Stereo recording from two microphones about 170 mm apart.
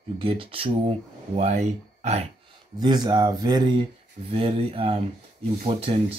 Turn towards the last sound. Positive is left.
turn(degrees=-35)  # may be behind; listen again after turning